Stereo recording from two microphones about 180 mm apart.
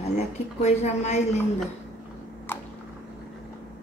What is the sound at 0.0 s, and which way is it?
A woman's voice, 40° left (ahead or behind).